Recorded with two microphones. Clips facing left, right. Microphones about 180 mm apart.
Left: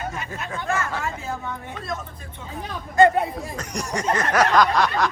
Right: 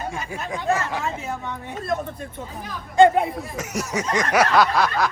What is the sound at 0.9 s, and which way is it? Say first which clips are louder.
Speech: right 1 dB; 15° right (ahead or behind).